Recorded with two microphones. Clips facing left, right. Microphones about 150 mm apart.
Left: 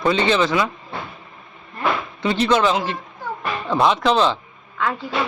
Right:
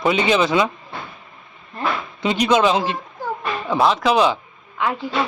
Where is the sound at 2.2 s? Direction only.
15° right (ahead or behind).